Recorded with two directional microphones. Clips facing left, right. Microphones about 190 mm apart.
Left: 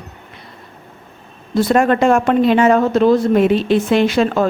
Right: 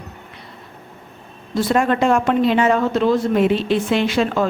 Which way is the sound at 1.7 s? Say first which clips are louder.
Left 3 dB; 50° left (ahead or behind).